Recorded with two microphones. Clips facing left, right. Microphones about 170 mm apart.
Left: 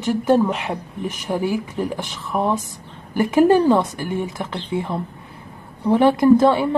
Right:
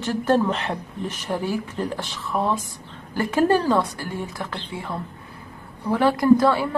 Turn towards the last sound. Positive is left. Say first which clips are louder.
# left 3 dB
turn(degrees=20)  # may be behind; listen again after turning